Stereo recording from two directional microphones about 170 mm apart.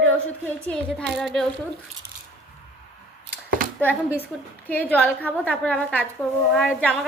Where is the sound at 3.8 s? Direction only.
10° left (ahead or behind).